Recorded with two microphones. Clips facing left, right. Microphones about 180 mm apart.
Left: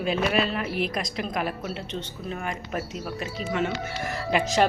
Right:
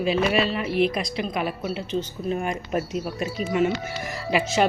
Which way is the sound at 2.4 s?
15° right (ahead or behind).